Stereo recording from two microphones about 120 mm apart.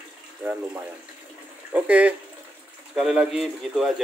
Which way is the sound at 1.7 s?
10° right (ahead or behind).